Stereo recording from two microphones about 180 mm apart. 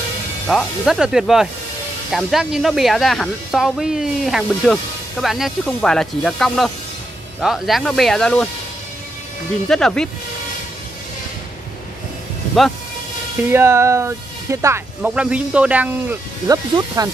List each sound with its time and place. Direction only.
0.5 s speech: centre (ahead or behind)
9.7 s speech: 5° left (ahead or behind)
13.5 s speech: 15° right (ahead or behind)
16.4 s speech: 20° right (ahead or behind)